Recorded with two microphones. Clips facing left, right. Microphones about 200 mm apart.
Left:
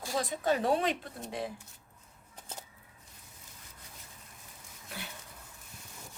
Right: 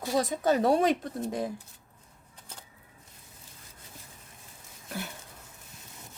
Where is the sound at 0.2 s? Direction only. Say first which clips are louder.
Right 5 dB; 40° right (ahead or behind).